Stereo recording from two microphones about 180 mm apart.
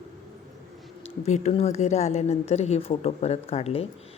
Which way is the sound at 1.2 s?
35° left (ahead or behind).